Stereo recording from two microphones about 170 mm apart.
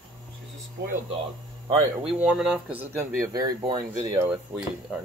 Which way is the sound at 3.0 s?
20° right (ahead or behind).